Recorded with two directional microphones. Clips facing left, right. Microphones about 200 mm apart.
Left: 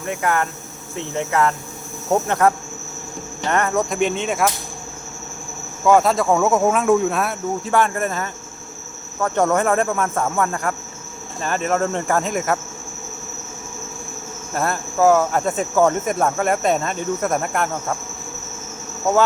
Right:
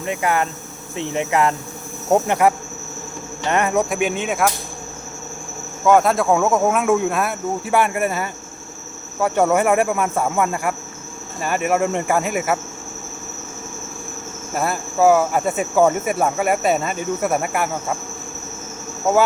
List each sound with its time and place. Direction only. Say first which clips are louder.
0.0 s cricket: right 1 dB; 15° right (ahead or behind)
3.5 s cricket: right 1 dB; 15° right (ahead or behind)
3.8 s speech: even; 5° right (ahead or behind)
5.8 s speech: even; centre (ahead or behind)
7.7 s cricket: right 1 dB; 10° right (ahead or behind)
14.5 s cricket: even; 5° right (ahead or behind)